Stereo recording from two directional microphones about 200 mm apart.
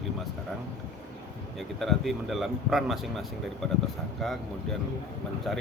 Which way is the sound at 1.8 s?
Centre (ahead or behind).